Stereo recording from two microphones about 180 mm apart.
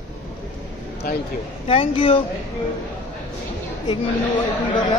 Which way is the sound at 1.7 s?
30° left (ahead or behind).